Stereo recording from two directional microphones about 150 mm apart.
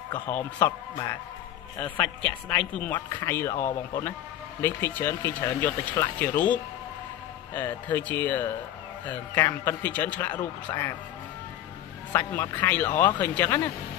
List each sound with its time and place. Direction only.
0.1 s speech: 15° left (ahead or behind)
2.2 s speech: 5° left (ahead or behind)
12.1 s speech: 10° left (ahead or behind)